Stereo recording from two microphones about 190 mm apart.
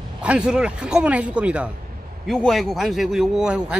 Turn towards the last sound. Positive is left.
turn(degrees=-5)  # may be behind; listen again after turning